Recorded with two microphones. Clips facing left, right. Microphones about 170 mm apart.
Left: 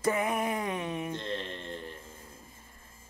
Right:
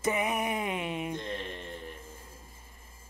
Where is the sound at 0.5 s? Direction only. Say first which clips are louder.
Even; 20° right (ahead or behind).